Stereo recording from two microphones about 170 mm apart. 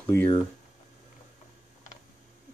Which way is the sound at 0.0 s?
15° left (ahead or behind).